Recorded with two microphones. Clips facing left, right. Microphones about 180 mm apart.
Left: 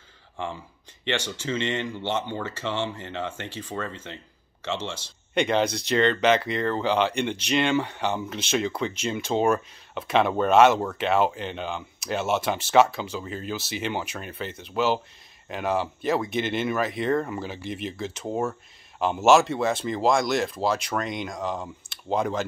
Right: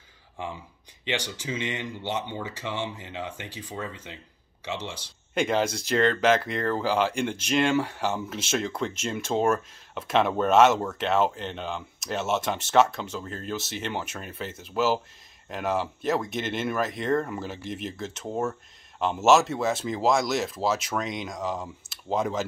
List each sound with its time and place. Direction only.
1.0 s speech: 15° right (ahead or behind)
5.3 s speech: centre (ahead or behind)